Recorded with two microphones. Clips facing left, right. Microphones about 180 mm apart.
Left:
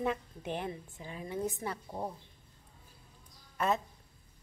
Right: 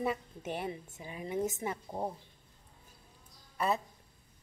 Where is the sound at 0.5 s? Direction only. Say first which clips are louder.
Even; 10° right (ahead or behind).